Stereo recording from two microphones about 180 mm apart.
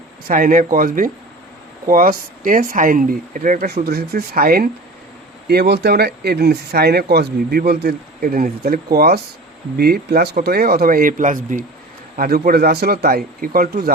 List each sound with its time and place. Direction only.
0.3 s speech: 50° right (ahead or behind)
5.5 s a man's voice: 65° right (ahead or behind)